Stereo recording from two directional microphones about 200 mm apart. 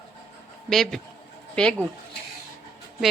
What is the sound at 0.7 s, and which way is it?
A woman's voice, centre (ahead or behind).